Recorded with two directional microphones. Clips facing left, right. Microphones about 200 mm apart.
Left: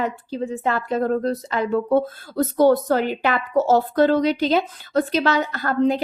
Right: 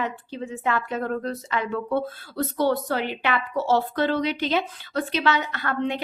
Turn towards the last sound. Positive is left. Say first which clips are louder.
# left 7 dB
turn(degrees=40)  # may be behind; listen again after turning